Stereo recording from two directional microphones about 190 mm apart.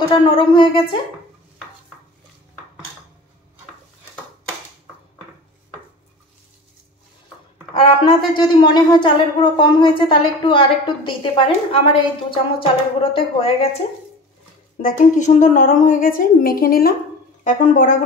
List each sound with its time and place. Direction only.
0.4 s a woman's voice: 25° left (ahead or behind)
7.7 s a woman's voice: 25° left (ahead or behind)
14.8 s a woman's voice: 40° left (ahead or behind)